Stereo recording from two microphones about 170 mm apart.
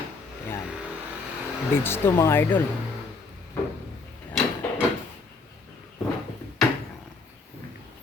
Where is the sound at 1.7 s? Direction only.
15° left (ahead or behind).